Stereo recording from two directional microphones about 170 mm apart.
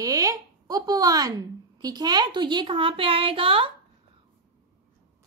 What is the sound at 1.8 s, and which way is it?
A woman's voice, 25° right (ahead or behind).